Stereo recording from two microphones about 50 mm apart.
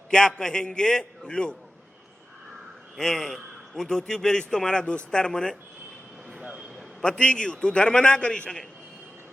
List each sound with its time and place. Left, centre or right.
0.1 s a man's voice: centre
3.0 s a man's voice: centre
7.0 s a man's voice: centre